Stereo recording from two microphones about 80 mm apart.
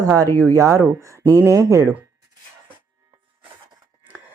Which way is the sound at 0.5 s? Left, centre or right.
Right.